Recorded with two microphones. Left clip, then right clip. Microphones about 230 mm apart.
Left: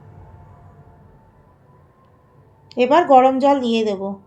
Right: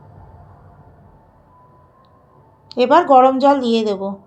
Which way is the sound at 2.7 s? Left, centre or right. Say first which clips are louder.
Right 1 dB; right.